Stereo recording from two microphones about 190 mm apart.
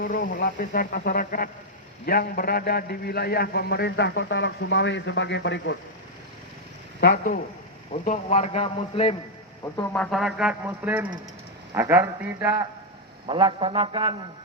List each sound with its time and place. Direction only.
0.0 s a man's voice: 50° left (ahead or behind); by 5.7 s 70° left (ahead or behind)
7.0 s speech: 50° left (ahead or behind)
8.0 s speech: 40° left (ahead or behind)
9.7 s music: 5° left (ahead or behind)
10.7 s speech: 10° right (ahead or behind)
13.2 s a man's voice: 25° right (ahead or behind)